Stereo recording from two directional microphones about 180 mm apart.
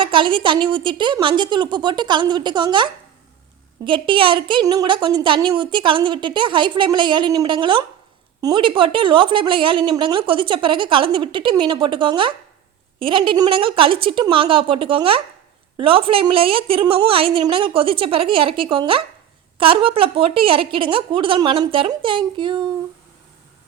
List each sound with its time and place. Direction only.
0.0 s a woman's voice: 25° right (ahead or behind)